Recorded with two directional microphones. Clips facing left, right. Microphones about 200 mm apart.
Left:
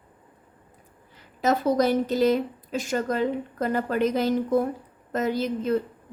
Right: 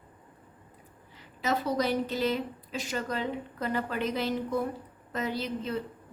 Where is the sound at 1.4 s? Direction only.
45° left (ahead or behind).